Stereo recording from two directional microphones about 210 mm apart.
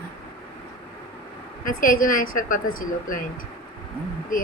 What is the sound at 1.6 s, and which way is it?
A woman's voice, 40° left (ahead or behind).